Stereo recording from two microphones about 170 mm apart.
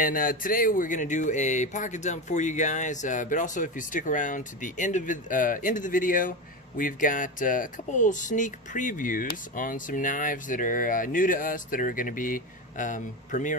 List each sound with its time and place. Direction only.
0.0 s speech: 55° left (ahead or behind)